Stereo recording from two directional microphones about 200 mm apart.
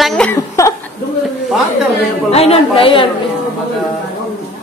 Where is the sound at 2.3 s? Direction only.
30° left (ahead or behind).